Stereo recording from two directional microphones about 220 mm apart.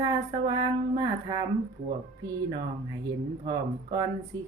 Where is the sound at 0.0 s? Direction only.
15° right (ahead or behind).